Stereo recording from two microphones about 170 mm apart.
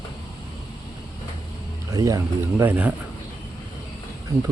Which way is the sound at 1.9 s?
20° right (ahead or behind).